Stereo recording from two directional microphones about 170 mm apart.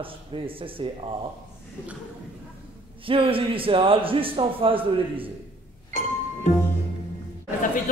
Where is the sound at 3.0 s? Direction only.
30° right (ahead or behind).